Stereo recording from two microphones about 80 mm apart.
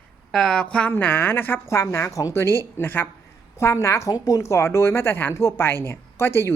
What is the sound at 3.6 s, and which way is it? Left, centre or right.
Speech, left.